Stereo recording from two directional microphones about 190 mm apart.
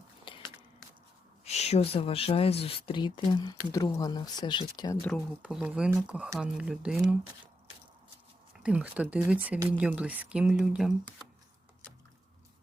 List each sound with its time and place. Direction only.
1.5 s speech: 35° left (ahead or behind)
5.4 s speech: 5° right (ahead or behind)
8.6 s speech: 5° right (ahead or behind)